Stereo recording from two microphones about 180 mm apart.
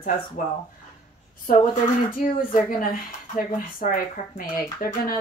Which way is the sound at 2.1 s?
50° left (ahead or behind).